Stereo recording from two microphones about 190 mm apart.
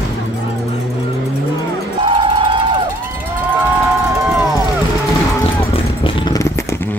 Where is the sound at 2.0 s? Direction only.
25° right (ahead or behind).